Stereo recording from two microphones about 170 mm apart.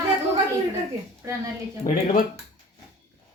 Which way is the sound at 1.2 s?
15° right (ahead or behind).